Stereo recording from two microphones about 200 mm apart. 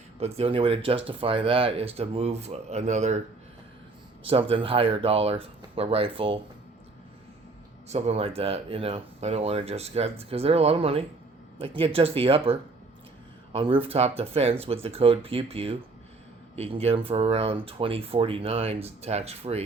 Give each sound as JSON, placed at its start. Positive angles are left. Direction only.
{"t": 0.2, "sound": "speech", "side_deg": -30}
{"t": 4.2, "sound": "speech", "side_deg": -30}
{"t": 7.9, "sound": "speech", "side_deg": -35}